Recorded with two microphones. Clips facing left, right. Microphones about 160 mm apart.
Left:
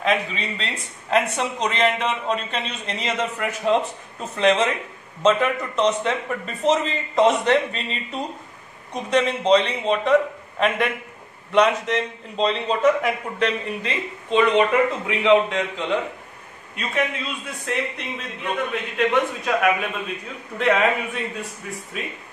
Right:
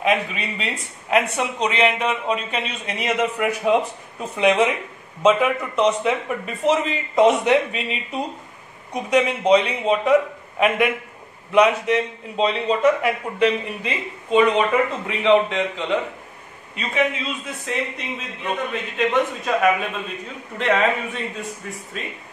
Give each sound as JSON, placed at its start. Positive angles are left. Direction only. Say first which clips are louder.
{"t": 0.0, "sound": "speech", "louder": "right 1 dB", "side_deg": -10}
{"t": 11.5, "sound": "a man's voice", "louder": "right 2 dB", "side_deg": -5}
{"t": 20.5, "sound": "a man's voice", "louder": "even", "side_deg": 5}